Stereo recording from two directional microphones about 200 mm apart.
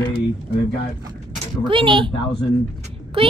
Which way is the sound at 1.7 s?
25° right (ahead or behind).